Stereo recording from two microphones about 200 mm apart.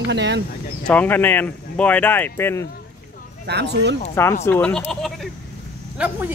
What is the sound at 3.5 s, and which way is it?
Speech, 55° right (ahead or behind).